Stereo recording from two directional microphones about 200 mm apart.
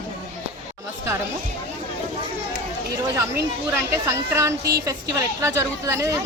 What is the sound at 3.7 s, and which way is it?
Speech, 15° right (ahead or behind).